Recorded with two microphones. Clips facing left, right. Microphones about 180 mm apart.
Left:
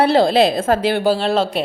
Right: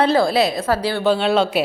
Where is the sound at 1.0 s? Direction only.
Centre (ahead or behind).